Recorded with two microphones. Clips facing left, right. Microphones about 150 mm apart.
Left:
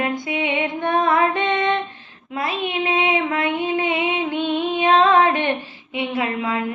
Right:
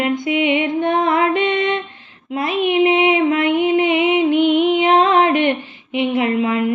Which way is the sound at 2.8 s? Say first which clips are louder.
Right 6 dB; 20° right (ahead or behind).